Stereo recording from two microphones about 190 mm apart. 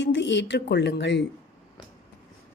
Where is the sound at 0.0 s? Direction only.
70° left (ahead or behind).